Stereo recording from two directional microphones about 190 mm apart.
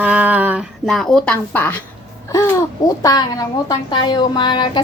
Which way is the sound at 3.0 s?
20° left (ahead or behind).